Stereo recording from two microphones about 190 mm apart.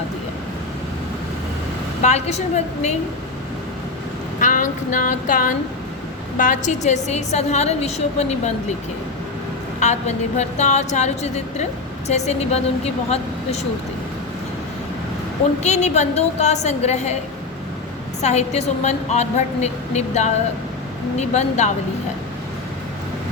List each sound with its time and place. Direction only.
2.0 s a woman's voice: 35° left (ahead or behind)
4.4 s a sound: 45° left (ahead or behind)
6.3 s a woman's voice: 45° left (ahead or behind)
9.8 s a woman's voice: 35° left (ahead or behind)
15.6 s a woman's voice: 35° left (ahead or behind)
18.2 s a woman's voice: 35° left (ahead or behind)